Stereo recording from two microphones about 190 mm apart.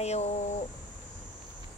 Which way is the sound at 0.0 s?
35° left (ahead or behind).